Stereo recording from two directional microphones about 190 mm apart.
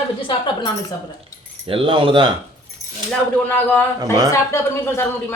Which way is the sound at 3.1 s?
10° left (ahead or behind).